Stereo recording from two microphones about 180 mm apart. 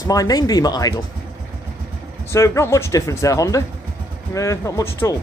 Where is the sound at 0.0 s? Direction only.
20° left (ahead or behind).